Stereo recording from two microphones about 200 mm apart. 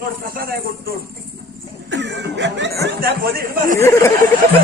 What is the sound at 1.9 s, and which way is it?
Snicker, 65° right (ahead or behind).